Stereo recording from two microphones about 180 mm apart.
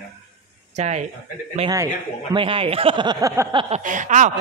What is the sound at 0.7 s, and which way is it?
Speech, 40° right (ahead or behind).